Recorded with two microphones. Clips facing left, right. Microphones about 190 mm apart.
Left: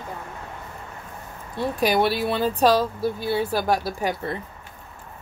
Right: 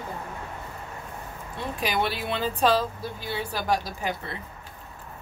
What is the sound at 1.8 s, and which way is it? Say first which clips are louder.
Speech: left 7 dB; 40° left (ahead or behind).